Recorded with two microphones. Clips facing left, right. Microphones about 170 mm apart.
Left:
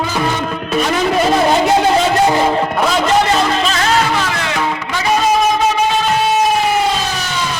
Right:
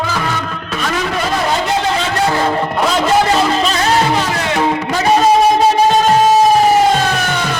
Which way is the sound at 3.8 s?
30° right (ahead or behind).